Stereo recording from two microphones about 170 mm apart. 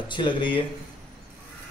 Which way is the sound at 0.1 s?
30° left (ahead or behind).